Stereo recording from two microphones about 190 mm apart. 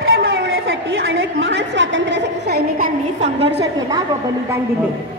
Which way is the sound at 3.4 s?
65° right (ahead or behind).